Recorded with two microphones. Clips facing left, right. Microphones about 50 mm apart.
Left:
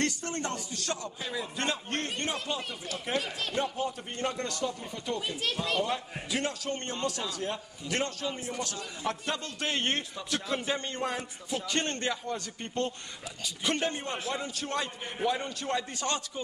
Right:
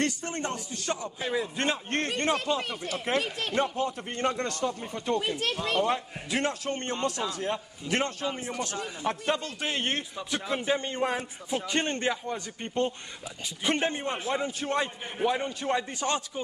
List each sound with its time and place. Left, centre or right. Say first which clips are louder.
0.0 s a man's voice: right 2 dB; centre
1.6 s a man's voice: right 3 dB; right
9.6 s a man's voice: even; centre